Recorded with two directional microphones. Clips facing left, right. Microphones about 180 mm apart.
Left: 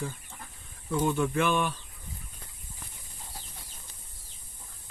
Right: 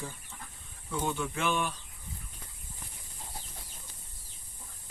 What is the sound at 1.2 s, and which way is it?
Speech, 55° left (ahead or behind).